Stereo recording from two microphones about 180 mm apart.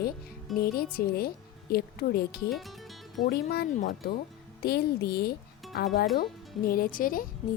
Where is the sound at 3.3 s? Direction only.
60° left (ahead or behind).